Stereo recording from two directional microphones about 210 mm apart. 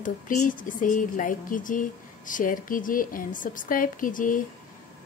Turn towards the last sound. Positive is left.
turn(degrees=40)  # may be behind; listen again after turning